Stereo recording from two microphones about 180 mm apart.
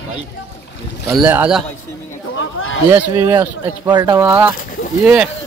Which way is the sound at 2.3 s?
90° left.